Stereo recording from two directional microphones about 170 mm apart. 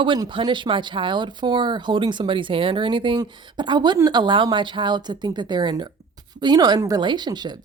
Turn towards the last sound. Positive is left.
turn(degrees=-25)  # may be behind; listen again after turning